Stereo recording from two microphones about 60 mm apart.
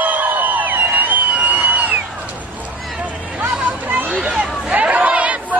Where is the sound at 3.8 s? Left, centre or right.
Right.